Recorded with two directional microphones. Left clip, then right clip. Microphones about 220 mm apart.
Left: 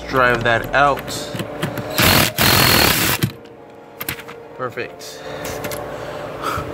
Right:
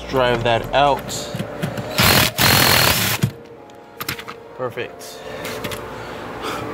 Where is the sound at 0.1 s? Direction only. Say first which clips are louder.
Left 2 dB; centre (ahead or behind).